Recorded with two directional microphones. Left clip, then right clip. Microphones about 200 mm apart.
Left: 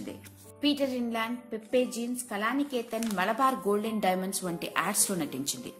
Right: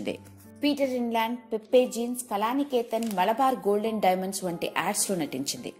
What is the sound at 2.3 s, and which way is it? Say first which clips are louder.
Speech: right 4 dB; 20° right (ahead or behind).